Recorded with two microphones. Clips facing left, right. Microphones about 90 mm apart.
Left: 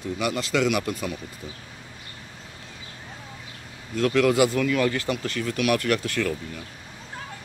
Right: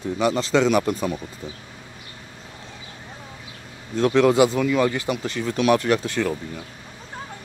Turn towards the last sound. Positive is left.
turn(degrees=-25)  # may be behind; listen again after turning